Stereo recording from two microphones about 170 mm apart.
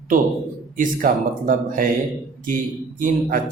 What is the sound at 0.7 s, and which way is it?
A man's voice, 50° right (ahead or behind).